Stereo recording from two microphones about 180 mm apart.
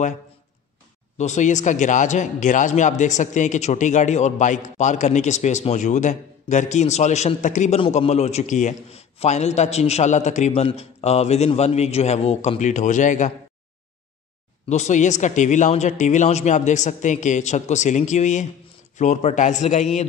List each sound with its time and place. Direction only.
1.1 s a man's voice: 40° left (ahead or behind)
14.7 s a man's voice: 40° left (ahead or behind)